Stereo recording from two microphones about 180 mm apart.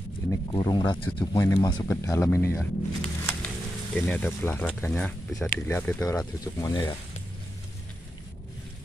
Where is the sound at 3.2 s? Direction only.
5° left (ahead or behind).